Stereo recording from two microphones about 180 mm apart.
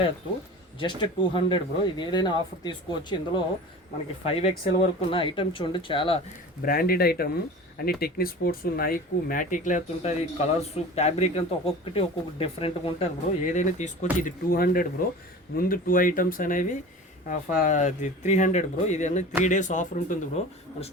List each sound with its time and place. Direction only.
0.8 s speech: 25° left (ahead or behind)
6.6 s speech: 55° left (ahead or behind); by 13.1 s 30° left (ahead or behind)
13.5 s speech: 40° left (ahead or behind)